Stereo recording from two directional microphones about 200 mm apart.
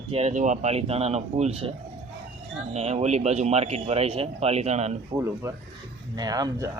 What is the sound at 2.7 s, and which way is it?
Speech, 35° right (ahead or behind).